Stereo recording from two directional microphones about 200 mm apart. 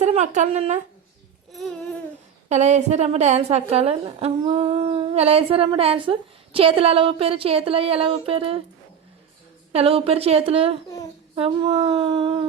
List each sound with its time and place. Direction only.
0.0 s speech: 35° right (ahead or behind)
1.5 s babbling: centre (ahead or behind)
2.5 s a woman's voice: 35° right (ahead or behind)
9.7 s a woman's voice: 30° right (ahead or behind)